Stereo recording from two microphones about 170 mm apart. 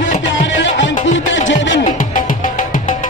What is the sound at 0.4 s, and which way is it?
Music, 90° left.